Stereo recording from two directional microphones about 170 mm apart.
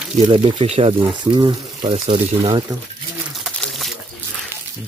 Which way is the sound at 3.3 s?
Centre (ahead or behind).